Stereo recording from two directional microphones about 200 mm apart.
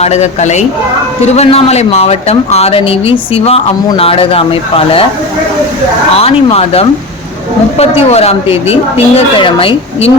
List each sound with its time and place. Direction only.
0.0 s speech: 35° left (ahead or behind)
6.1 s speech: 30° left (ahead or behind)